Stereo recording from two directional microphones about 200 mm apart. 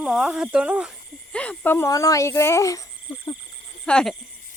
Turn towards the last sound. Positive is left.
turn(degrees=5)  # may be behind; listen again after turning